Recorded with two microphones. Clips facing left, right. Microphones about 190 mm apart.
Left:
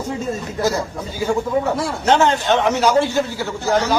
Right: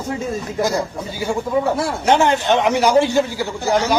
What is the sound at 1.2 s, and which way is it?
A man's voice, 10° right (ahead or behind).